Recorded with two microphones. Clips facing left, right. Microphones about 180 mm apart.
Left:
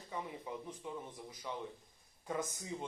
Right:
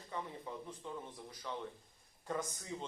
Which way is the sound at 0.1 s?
10° left (ahead or behind).